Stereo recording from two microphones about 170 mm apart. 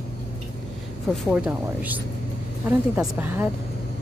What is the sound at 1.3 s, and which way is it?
A woman's voice, 5° right (ahead or behind).